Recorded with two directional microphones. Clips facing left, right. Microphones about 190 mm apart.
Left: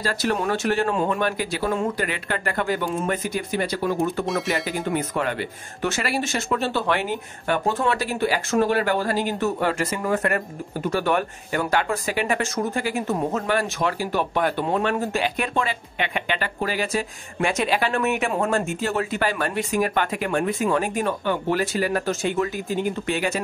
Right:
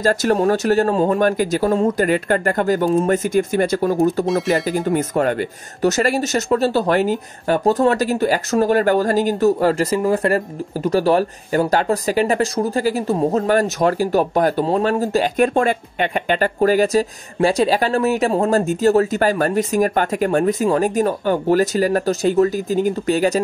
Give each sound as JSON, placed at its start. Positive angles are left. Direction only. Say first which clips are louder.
{"t": 0.0, "sound": "speech", "louder": "right 8 dB", "side_deg": -45}